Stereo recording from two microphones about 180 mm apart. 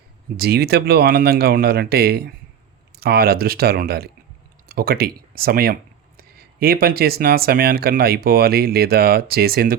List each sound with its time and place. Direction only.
0.3 s speech: 60° right (ahead or behind)